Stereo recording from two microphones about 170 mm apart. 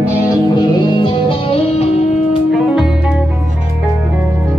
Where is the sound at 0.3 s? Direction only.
25° left (ahead or behind).